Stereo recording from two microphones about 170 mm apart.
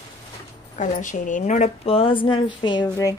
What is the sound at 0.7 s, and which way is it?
A woman's voice, 50° left (ahead or behind).